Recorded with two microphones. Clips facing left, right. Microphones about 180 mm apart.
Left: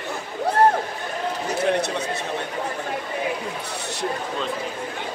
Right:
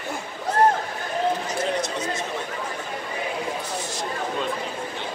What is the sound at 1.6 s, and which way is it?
Speech, 65° left (ahead or behind).